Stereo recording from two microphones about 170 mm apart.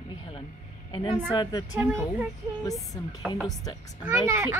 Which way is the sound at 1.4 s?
20° left (ahead or behind).